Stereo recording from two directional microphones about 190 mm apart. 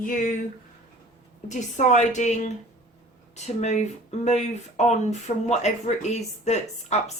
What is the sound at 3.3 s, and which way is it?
Speech, 35° left (ahead or behind).